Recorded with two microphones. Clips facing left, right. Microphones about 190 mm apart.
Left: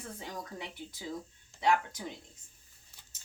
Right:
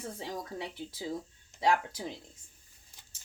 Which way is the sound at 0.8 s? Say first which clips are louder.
Right 4 dB; 30° right (ahead or behind).